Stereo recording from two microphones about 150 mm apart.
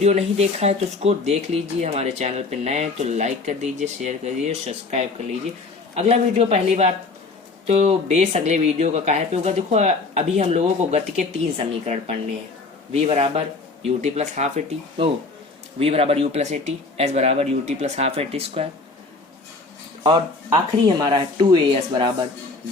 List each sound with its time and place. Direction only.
0.0 s speech: 45° right (ahead or behind)
15.8 s speech: 40° right (ahead or behind)
20.1 s speech: 30° right (ahead or behind)